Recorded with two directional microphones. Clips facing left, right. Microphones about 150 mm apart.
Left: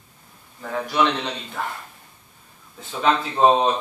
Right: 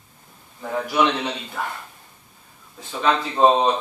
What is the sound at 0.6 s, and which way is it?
A man's voice, 10° right (ahead or behind).